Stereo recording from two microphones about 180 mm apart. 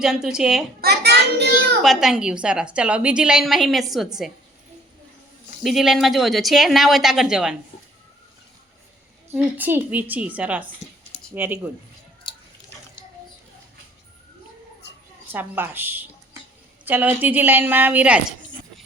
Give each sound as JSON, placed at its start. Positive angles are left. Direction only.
{"t": 0.0, "sound": "a woman's voice", "side_deg": -5}
{"t": 0.8, "sound": "child singing", "side_deg": -60}
{"t": 1.8, "sound": "a woman's voice", "side_deg": 0}
{"t": 5.6, "sound": "a woman's voice", "side_deg": 0}
{"t": 9.3, "sound": "a woman's voice", "side_deg": -10}
{"t": 15.3, "sound": "a woman's voice", "side_deg": -10}